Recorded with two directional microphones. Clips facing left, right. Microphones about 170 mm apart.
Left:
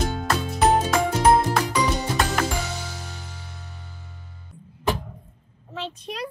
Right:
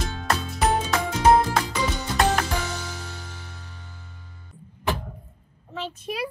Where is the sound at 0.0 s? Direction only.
40° left (ahead or behind).